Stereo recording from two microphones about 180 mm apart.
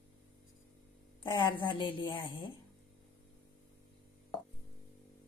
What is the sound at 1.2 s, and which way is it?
A woman's voice, 25° left (ahead or behind).